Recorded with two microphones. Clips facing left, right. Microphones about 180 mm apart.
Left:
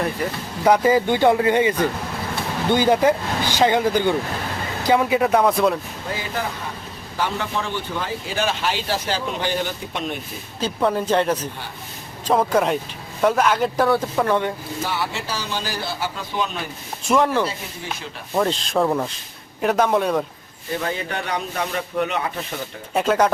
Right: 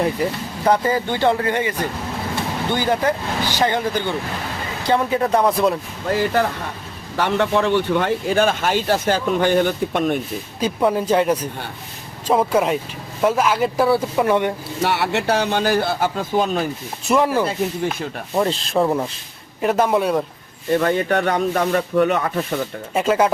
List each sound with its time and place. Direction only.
0.6 s speech: 10° left (ahead or behind)
2.7 s speech: 15° left (ahead or behind); by 5.7 s centre (ahead or behind)
6.1 s a man's voice: 65° right (ahead or behind)
10.6 s speech: 10° right (ahead or behind)
14.8 s a man's voice: 70° right (ahead or behind); by 16.6 s 45° right (ahead or behind)
17.1 s speech: 5° right (ahead or behind)
20.7 s speech: 55° right (ahead or behind)
23.0 s speech: 5° right (ahead or behind)